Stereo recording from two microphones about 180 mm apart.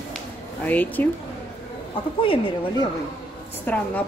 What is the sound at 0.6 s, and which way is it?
Speech, 10° left (ahead or behind).